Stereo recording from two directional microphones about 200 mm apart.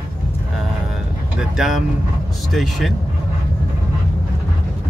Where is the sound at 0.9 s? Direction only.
Centre (ahead or behind).